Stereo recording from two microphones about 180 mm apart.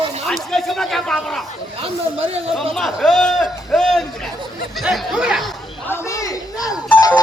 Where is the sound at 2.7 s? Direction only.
Centre (ahead or behind).